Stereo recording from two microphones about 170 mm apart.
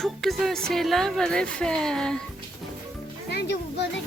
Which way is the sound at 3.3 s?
75° left (ahead or behind).